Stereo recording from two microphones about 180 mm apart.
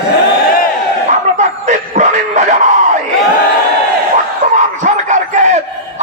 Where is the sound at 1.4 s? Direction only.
45° right (ahead or behind).